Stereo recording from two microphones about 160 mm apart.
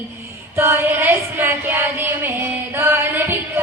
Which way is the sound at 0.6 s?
15° right (ahead or behind).